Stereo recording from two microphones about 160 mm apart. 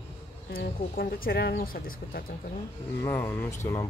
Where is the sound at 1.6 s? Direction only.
65° left (ahead or behind).